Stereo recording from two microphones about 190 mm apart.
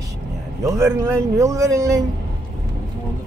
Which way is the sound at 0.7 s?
15° right (ahead or behind).